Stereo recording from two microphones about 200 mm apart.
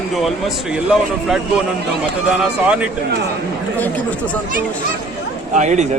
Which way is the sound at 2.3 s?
5° right (ahead or behind).